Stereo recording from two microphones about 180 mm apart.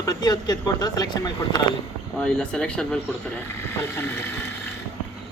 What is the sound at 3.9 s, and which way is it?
Speech, 15° left (ahead or behind).